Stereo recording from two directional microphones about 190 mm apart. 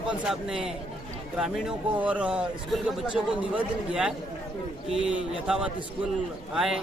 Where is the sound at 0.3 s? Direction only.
Centre (ahead or behind).